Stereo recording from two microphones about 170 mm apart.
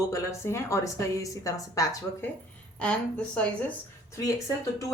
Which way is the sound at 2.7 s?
5° left (ahead or behind).